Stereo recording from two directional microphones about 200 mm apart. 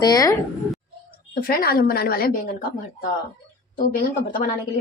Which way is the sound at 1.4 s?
45° left (ahead or behind).